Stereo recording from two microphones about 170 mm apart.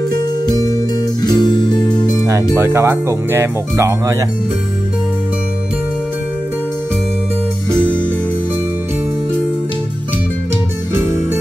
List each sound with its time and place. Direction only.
0.1 s music: 20° left (ahead or behind)
2.5 s speech: 15° right (ahead or behind)